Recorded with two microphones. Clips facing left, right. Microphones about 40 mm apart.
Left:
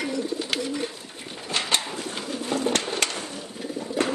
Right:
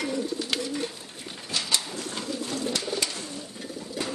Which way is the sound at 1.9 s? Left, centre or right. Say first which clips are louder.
Left 1 dB; centre.